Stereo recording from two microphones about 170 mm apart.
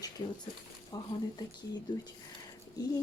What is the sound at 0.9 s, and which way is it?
Speech, 25° left (ahead or behind).